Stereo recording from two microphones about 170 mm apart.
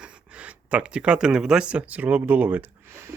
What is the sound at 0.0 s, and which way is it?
Speech, 5° right (ahead or behind).